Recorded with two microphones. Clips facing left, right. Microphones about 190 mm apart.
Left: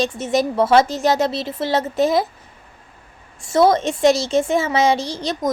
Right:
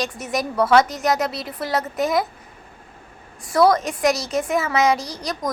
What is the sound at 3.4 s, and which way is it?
Child singing, 25° left (ahead or behind).